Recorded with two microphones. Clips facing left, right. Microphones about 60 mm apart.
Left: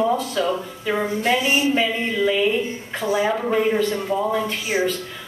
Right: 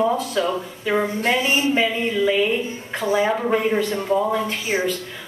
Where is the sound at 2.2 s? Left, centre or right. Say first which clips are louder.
Left 1 dB; centre.